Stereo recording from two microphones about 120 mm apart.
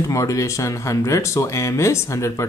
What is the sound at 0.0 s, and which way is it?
Speech, 25° left (ahead or behind).